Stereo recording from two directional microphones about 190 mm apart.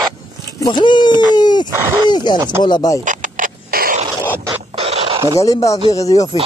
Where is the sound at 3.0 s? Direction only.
45° right (ahead or behind).